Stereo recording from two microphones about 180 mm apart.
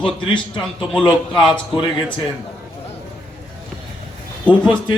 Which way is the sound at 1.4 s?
Centre (ahead or behind).